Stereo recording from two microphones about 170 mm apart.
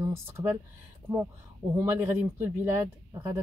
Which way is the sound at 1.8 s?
15° right (ahead or behind).